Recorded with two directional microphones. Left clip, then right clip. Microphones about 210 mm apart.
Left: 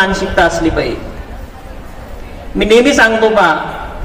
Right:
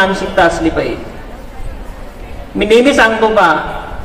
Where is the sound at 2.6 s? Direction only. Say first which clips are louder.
Even; 45° left (ahead or behind).